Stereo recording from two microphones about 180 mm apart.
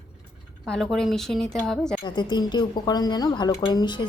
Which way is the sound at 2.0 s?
25° left (ahead or behind).